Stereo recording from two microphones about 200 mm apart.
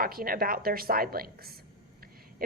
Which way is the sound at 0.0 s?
45° right (ahead or behind).